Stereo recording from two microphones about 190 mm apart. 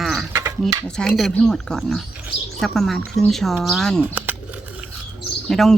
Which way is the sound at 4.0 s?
10° right (ahead or behind).